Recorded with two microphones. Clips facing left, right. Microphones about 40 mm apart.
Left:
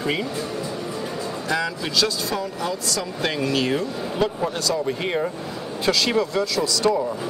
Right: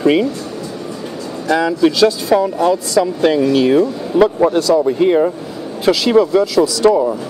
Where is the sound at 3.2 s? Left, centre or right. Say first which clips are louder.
Right 8 dB; centre.